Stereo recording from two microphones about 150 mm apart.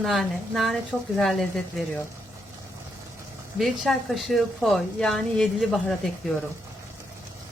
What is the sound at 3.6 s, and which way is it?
Speech, centre (ahead or behind).